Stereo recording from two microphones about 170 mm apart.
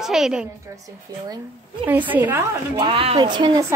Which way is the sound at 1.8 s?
10° right (ahead or behind).